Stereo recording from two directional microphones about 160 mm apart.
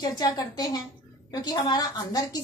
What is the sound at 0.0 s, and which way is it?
A woman's voice, 25° left (ahead or behind).